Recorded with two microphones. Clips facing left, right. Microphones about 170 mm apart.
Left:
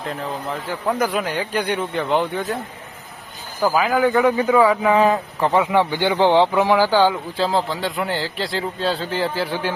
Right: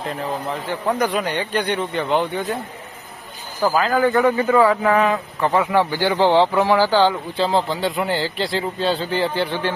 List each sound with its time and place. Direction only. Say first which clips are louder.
0.7 s speech: right 1 dB; 5° left (ahead or behind)
3.6 s speech: even; 10° left (ahead or behind)
4.9 s speech: left 2 dB; 35° left (ahead or behind)
5.4 s speech: even; centre (ahead or behind)
5.7 s speech: even; 20° left (ahead or behind)
7.3 s speech: right 1 dB; centre (ahead or behind)